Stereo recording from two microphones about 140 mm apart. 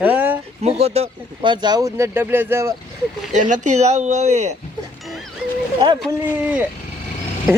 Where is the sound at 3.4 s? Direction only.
60° right (ahead or behind).